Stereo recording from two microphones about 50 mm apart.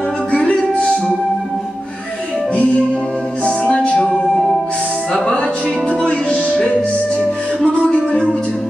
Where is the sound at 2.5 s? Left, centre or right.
Left.